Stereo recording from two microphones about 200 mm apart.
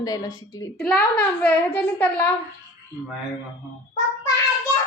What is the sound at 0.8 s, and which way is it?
A child's voice, 5° left (ahead or behind).